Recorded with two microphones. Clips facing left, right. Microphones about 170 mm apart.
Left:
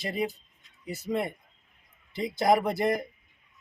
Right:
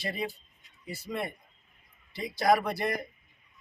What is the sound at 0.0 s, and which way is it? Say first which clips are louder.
Speech: left 4 dB; 20° left (ahead or behind).